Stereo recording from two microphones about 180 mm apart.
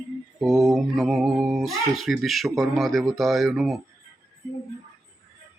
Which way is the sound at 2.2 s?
Centre (ahead or behind).